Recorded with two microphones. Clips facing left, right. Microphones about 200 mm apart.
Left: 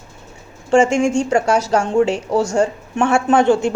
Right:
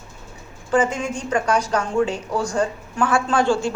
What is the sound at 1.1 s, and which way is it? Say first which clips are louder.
Speech: left 5 dB; 25° left (ahead or behind).